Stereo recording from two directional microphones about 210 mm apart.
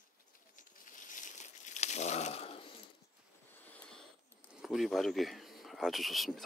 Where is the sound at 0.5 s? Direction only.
40° left (ahead or behind).